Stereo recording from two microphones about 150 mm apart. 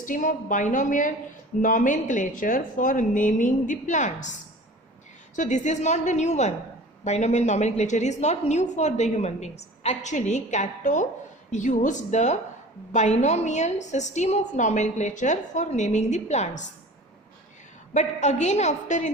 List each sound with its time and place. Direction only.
0.0 s a woman's voice: 60° left (ahead or behind)
5.4 s a woman's voice: 55° left (ahead or behind)
17.9 s a woman's voice: 50° left (ahead or behind)